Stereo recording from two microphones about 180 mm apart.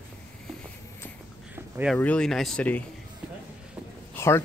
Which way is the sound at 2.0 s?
5° left (ahead or behind).